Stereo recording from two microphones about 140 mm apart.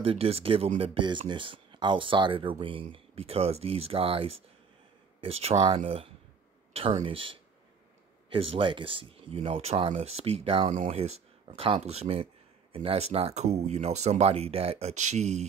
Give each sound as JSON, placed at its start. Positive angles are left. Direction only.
{"t": 0.0, "sound": "speech", "side_deg": -40}